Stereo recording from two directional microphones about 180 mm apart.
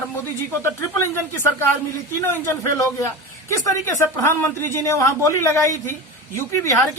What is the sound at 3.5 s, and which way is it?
Speech, 20° left (ahead or behind).